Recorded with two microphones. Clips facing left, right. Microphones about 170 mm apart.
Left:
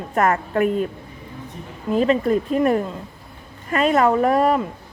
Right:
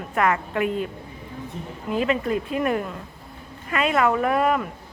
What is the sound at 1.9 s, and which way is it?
Speech, 35° left (ahead or behind).